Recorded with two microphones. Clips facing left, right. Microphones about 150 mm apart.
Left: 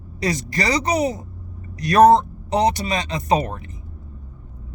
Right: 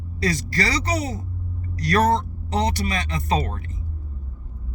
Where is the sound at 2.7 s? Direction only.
20° left (ahead or behind).